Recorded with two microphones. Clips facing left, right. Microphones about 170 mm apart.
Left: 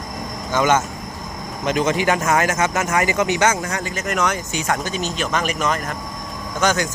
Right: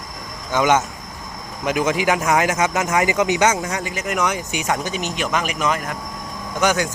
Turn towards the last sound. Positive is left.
turn(degrees=-10)  # may be behind; listen again after turning